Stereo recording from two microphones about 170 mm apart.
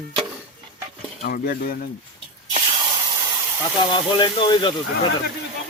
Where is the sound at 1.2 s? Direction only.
60° left (ahead or behind).